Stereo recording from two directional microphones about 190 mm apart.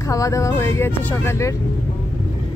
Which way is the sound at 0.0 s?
15° left (ahead or behind).